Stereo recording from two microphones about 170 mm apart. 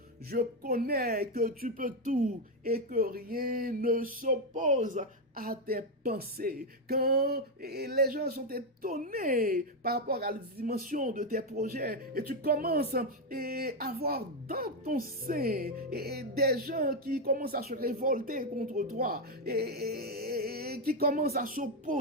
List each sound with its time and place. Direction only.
0.3 s speech: 60° right (ahead or behind)